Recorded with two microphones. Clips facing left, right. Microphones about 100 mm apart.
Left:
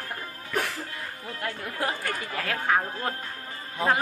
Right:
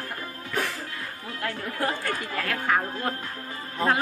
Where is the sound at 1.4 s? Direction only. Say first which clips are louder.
Right 2 dB; 20° left (ahead or behind).